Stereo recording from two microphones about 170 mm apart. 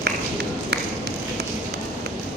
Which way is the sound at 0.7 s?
70° right (ahead or behind).